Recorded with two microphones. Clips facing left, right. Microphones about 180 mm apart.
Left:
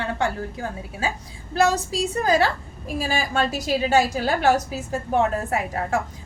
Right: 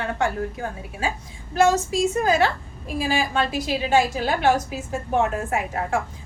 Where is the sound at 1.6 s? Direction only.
35° left (ahead or behind).